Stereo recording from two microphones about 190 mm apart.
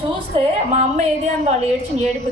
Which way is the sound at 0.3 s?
35° right (ahead or behind).